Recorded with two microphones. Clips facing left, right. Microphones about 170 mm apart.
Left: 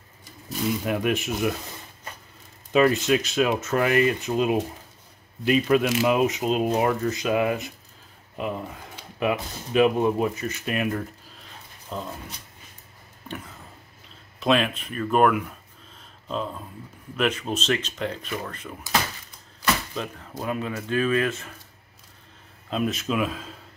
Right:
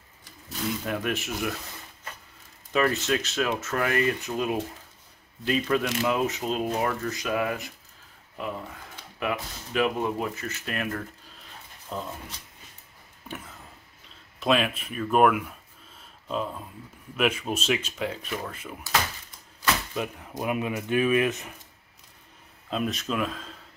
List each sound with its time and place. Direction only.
0.2 s speech: 15° left (ahead or behind)
2.7 s speech: 15° left (ahead or behind)
11.9 s speech: centre (ahead or behind)
14.4 s speech: 5° right (ahead or behind)
19.9 s speech: 10° right (ahead or behind)
22.7 s speech: centre (ahead or behind)